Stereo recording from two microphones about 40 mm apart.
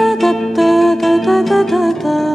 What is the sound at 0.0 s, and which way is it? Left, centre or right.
Music, centre.